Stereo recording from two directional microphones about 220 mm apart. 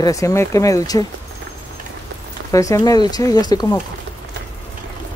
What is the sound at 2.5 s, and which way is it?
Speech, 15° left (ahead or behind).